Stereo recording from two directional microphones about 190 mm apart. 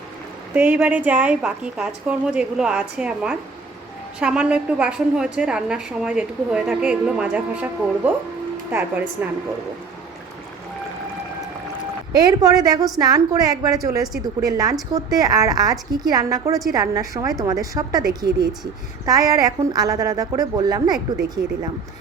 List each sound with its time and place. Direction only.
0.5 s a woman's voice: 10° right (ahead or behind)
8.7 s speech: 10° right (ahead or behind)
12.1 s a woman's voice: 20° right (ahead or behind)